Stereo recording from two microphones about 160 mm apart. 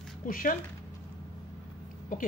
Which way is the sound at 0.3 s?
60° left (ahead or behind).